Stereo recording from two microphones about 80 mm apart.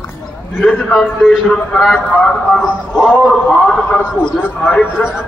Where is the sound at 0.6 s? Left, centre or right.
Centre.